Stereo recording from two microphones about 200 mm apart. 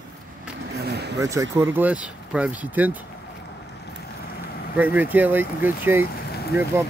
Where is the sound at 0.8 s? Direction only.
55° right (ahead or behind).